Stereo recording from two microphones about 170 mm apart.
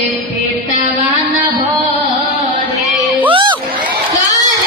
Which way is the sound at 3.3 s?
30° right (ahead or behind).